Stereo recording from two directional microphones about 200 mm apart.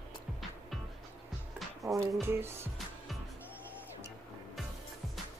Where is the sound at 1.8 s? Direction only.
15° right (ahead or behind).